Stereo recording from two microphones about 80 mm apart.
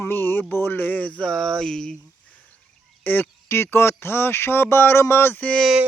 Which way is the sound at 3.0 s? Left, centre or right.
Left.